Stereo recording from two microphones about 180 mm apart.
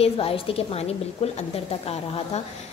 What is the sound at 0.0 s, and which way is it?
A woman's voice, 30° left (ahead or behind).